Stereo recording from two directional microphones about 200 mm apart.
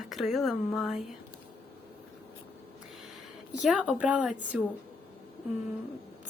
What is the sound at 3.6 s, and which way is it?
A woman's voice, 5° right (ahead or behind).